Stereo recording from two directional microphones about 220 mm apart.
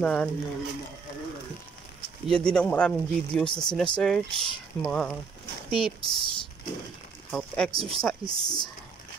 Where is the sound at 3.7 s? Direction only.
5° left (ahead or behind).